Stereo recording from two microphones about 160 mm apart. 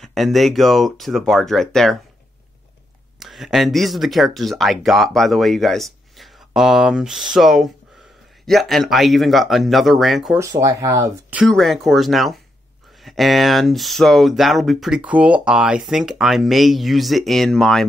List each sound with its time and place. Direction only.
0.0 s speech: centre (ahead or behind)
3.2 s speech: centre (ahead or behind)
10.3 s speech: 20° right (ahead or behind)
11.3 s speech: centre (ahead or behind)